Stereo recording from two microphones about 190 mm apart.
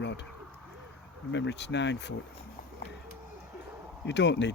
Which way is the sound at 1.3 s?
70° left (ahead or behind).